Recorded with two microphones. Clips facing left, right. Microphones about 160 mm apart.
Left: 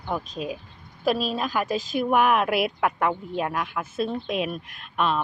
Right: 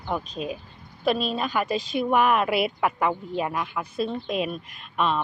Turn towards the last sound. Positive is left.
turn(degrees=0)  # may be behind; listen again after turning